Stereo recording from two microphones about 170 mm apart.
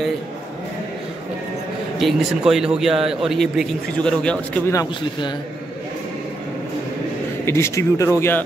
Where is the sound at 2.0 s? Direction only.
Centre (ahead or behind).